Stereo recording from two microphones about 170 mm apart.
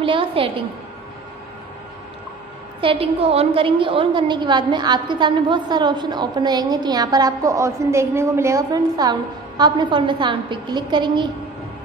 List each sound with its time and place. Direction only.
0.0 s a woman's voice: 30° right (ahead or behind)
2.8 s a woman's voice: 35° right (ahead or behind)